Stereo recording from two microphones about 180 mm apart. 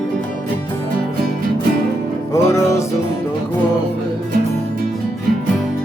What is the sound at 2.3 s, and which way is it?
Music, 15° left (ahead or behind).